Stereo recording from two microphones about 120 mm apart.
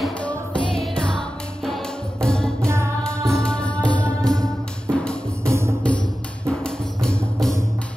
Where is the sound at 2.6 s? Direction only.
20° right (ahead or behind).